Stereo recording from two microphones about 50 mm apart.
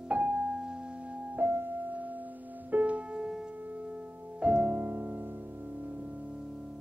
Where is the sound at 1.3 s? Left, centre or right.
Right; by 4.7 s centre.